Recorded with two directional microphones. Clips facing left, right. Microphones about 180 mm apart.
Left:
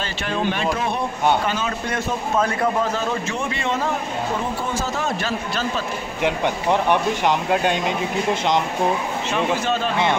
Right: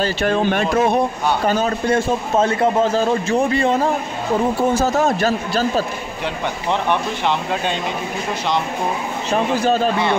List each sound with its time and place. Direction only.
0.0 s a man's voice: 50° right (ahead or behind)
6.2 s speech: 15° left (ahead or behind)
9.3 s a man's voice: 40° right (ahead or behind)